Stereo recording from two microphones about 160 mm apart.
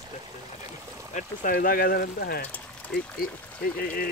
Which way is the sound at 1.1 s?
55° left (ahead or behind).